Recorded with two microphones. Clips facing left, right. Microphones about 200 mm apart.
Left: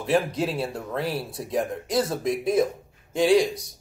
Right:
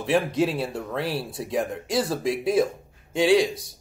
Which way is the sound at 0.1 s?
Centre (ahead or behind).